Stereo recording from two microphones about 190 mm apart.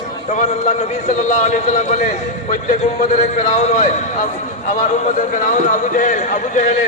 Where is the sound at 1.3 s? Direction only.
40° left (ahead or behind).